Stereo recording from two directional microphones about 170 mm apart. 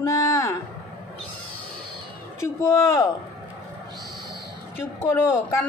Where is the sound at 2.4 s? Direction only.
15° left (ahead or behind).